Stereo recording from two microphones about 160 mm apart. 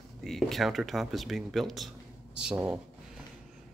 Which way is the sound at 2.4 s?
5° right (ahead or behind).